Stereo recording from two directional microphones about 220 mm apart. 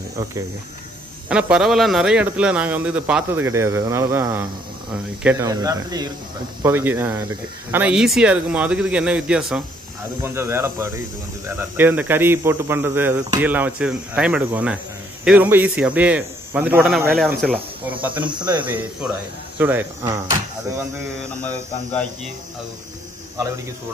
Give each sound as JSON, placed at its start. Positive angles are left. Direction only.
{"t": 1.3, "sound": "speech", "side_deg": -5}
{"t": 18.2, "sound": "speech", "side_deg": -20}
{"t": 18.7, "sound": "speech", "side_deg": -5}
{"t": 21.4, "sound": "speech", "side_deg": 5}